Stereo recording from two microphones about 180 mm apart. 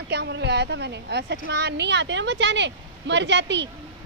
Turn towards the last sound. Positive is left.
turn(degrees=-80)